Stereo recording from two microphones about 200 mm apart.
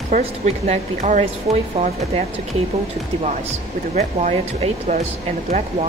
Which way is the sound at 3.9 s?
35° right (ahead or behind).